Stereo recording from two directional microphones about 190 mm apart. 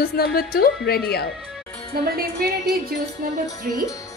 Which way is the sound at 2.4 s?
50° right (ahead or behind).